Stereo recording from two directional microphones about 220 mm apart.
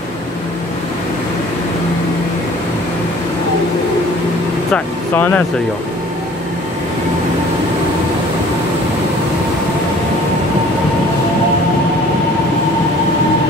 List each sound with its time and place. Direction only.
4.7 s speech: 10° left (ahead or behind)